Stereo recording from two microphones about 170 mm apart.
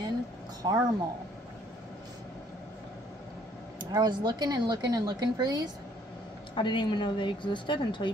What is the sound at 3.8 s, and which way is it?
Speech, 25° right (ahead or behind).